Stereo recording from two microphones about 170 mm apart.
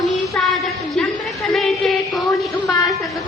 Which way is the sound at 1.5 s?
Centre (ahead or behind).